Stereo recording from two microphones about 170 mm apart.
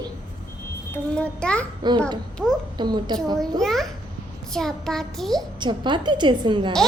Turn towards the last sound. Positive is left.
turn(degrees=-30)  # may be behind; listen again after turning